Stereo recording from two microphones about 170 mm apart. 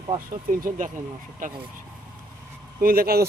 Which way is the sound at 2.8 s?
60° right (ahead or behind).